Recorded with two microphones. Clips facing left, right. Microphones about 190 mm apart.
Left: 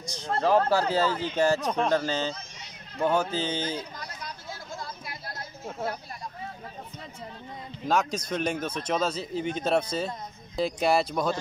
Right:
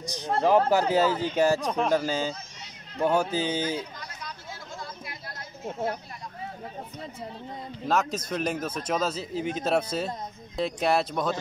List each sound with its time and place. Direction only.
0.1 s speech: 15° right (ahead or behind)
4.7 s a sound: 35° left (ahead or behind)
5.7 s speech: 15° right (ahead or behind)
7.9 s speech: 5° right (ahead or behind)